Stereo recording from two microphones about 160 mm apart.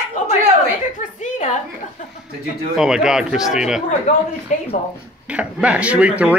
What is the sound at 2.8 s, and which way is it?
Speech, 5° right (ahead or behind).